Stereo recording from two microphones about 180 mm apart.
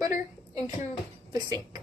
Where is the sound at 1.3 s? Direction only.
25° right (ahead or behind).